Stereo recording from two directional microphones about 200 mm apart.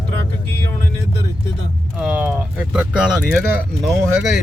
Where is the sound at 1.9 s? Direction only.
5° right (ahead or behind).